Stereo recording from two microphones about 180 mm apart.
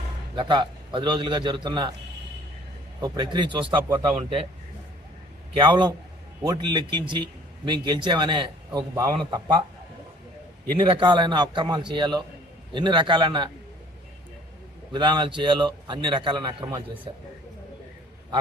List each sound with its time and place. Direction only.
0.3 s a man's voice: 25° right (ahead or behind)
3.0 s a man's voice: 25° right (ahead or behind)
5.5 s a man's voice: 25° right (ahead or behind)
10.8 s a man's voice: 25° right (ahead or behind)
14.9 s a man's voice: 25° right (ahead or behind)